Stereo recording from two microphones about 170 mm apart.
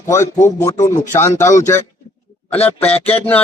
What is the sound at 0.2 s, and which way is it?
Speech, 45° left (ahead or behind).